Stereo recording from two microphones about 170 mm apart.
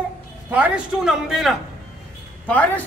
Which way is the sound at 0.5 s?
10° right (ahead or behind).